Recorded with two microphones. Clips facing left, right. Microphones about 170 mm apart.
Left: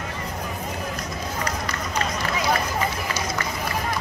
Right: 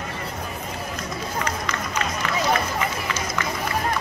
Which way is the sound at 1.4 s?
35° left (ahead or behind).